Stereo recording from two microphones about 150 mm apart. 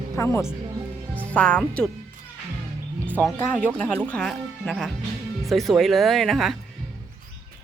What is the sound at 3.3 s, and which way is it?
Speech, 10° left (ahead or behind).